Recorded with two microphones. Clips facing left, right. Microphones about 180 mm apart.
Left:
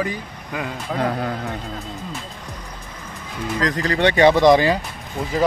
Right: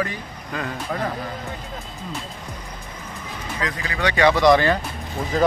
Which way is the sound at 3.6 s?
40° left (ahead or behind).